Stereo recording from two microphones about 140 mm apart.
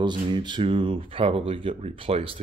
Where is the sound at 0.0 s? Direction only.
35° right (ahead or behind).